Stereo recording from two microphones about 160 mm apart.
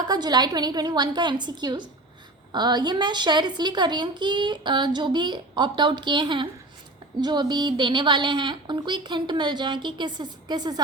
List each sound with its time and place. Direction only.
0.1 s speech: 25° right (ahead or behind)